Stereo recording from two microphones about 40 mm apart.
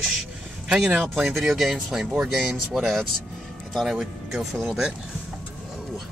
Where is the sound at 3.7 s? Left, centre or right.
Centre.